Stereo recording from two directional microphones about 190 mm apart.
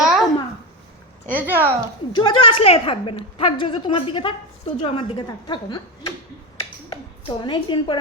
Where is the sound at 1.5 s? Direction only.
10° right (ahead or behind).